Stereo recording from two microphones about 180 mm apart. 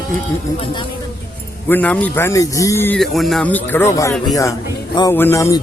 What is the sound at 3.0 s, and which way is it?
A man's voice, centre (ahead or behind).